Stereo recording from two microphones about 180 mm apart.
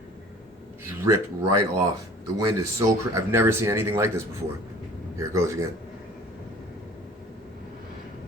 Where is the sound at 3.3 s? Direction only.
15° right (ahead or behind).